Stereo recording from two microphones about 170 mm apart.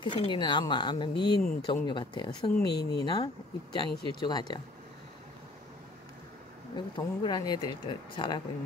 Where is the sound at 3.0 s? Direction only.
25° left (ahead or behind).